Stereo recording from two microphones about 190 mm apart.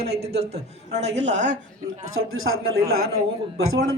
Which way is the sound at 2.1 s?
90° right.